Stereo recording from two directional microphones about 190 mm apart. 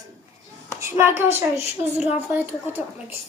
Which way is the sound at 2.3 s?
10° right (ahead or behind).